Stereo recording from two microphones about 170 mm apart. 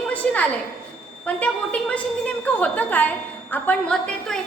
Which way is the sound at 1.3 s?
5° left (ahead or behind).